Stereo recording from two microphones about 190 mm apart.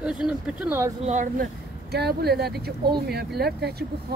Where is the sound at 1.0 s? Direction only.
40° right (ahead or behind).